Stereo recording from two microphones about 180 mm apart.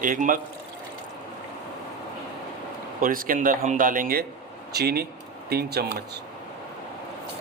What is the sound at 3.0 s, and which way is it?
Speech, 50° right (ahead or behind).